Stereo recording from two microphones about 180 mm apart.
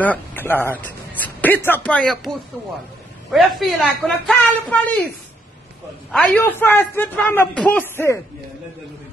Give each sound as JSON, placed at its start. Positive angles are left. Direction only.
{"t": 0.0, "sound": "a man's voice", "side_deg": 10}
{"t": 6.1, "sound": "speech", "side_deg": 10}